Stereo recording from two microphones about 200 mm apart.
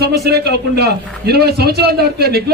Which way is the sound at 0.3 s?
55° right (ahead or behind).